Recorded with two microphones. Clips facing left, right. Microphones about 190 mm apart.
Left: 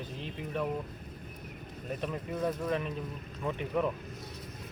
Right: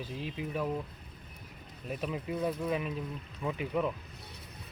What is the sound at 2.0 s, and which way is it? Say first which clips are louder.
Speech: even; 5° right (ahead or behind).